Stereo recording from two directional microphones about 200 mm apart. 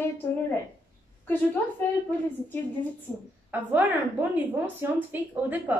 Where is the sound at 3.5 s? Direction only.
10° right (ahead or behind).